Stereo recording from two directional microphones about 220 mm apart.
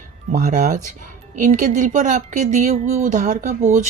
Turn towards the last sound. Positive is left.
turn(degrees=-35)  # may be behind; listen again after turning